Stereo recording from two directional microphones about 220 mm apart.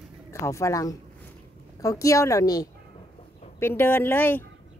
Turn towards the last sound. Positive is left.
turn(degrees=10)  # may be behind; listen again after turning